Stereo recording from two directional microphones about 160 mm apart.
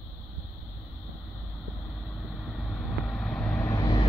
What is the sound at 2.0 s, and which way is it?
Vehicle, centre (ahead or behind).